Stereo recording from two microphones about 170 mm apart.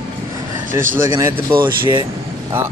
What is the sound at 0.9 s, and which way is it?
Speech, 20° right (ahead or behind).